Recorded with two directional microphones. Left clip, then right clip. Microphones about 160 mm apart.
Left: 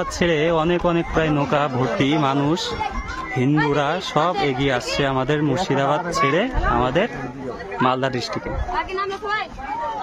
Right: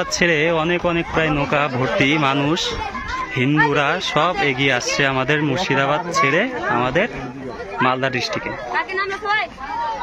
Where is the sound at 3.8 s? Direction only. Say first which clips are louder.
Right 2 dB; 20° left (ahead or behind).